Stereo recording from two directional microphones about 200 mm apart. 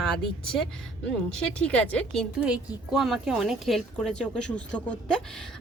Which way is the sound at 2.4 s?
5° right (ahead or behind).